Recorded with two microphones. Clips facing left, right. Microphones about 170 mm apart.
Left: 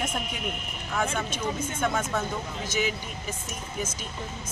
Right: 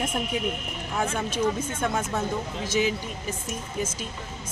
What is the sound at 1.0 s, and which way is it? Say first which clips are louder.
Speech: right 1 dB; 35° right (ahead or behind).